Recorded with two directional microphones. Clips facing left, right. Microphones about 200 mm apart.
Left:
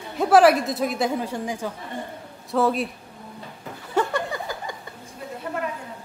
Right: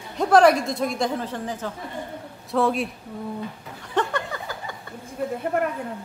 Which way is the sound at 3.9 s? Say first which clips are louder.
Left 1 dB; 10° left (ahead or behind).